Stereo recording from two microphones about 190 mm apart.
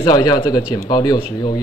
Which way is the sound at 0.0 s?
20° left (ahead or behind).